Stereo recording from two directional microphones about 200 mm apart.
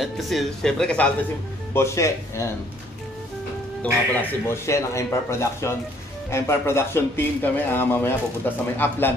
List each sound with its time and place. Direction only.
0.0 s speech: centre (ahead or behind)
3.8 s speech: 10° left (ahead or behind)